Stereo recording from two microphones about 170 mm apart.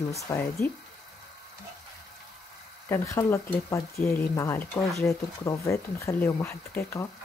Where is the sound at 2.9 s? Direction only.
15° left (ahead or behind).